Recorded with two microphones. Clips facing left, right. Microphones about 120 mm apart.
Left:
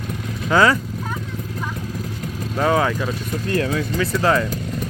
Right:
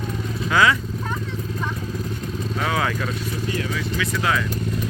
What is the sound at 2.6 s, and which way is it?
Speech, 30° left (ahead or behind).